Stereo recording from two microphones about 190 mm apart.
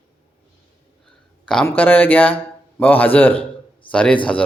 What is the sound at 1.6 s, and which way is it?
A man's voice, 10° left (ahead or behind).